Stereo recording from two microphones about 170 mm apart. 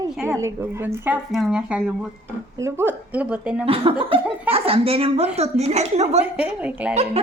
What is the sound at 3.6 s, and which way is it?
A woman's voice, 35° right (ahead or behind).